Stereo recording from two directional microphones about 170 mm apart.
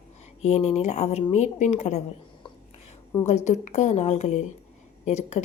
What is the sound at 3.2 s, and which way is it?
A woman's voice, 40° left (ahead or behind).